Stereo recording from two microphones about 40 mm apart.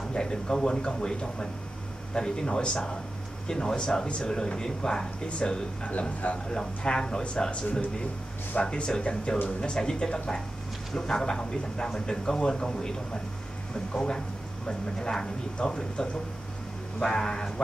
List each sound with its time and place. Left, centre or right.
0.1 s speech: left
5.9 s a man's voice: left
6.5 s speech: centre
8.6 s speech: left
14.7 s speech: centre